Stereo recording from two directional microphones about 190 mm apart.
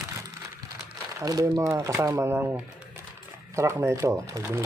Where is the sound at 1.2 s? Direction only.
20° right (ahead or behind).